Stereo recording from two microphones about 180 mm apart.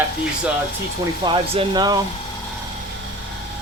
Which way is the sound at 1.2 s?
30° right (ahead or behind).